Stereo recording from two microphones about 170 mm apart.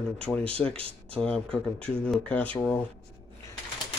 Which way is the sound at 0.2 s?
5° left (ahead or behind).